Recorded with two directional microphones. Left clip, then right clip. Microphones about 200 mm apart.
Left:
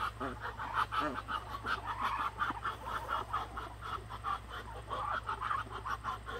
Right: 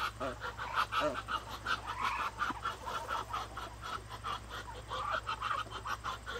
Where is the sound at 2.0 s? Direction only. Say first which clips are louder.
Even; 20° right (ahead or behind).